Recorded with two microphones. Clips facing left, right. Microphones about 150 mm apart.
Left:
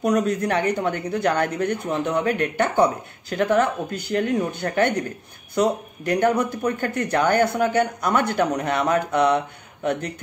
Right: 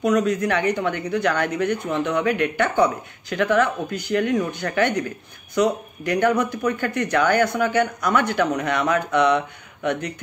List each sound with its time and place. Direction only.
0.0 s speech: 35° left (ahead or behind)